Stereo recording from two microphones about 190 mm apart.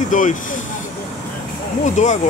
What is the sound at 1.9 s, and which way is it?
Speech, 40° left (ahead or behind).